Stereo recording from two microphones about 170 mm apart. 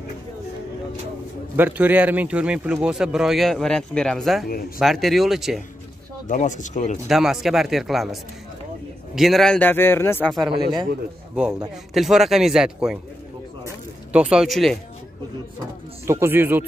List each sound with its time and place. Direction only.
1.6 s a man's voice: 10° right (ahead or behind)
6.2 s speech: 45° left (ahead or behind)
7.1 s a man's voice: centre (ahead or behind); by 10.3 s 15° left (ahead or behind)
11.3 s a man's voice: 5° right (ahead or behind)
14.1 s a man's voice: 5° right (ahead or behind)
16.1 s speech: 15° right (ahead or behind)